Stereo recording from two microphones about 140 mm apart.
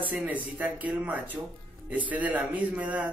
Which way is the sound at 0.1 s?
10° right (ahead or behind).